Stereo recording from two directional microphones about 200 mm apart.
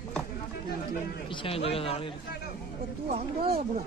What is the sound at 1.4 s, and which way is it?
Speech, 30° left (ahead or behind).